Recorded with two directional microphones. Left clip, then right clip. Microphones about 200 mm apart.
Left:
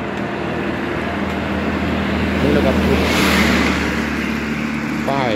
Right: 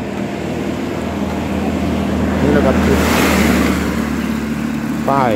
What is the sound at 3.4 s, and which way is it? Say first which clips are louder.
Vehicle: right 1 dB; 55° right (ahead or behind).